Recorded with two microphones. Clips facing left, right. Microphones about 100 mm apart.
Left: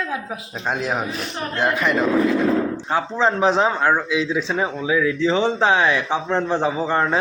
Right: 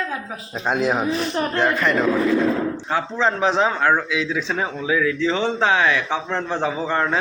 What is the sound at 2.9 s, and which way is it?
Speech, 20° left (ahead or behind).